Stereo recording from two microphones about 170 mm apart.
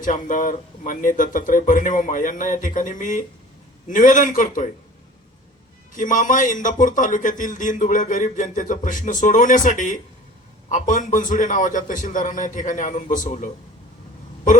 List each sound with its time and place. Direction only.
0.0 s a man's voice: 50° left (ahead or behind)
5.9 s a man's voice: 50° left (ahead or behind)